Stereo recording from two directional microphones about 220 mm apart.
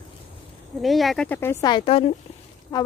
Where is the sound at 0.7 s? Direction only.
Centre (ahead or behind).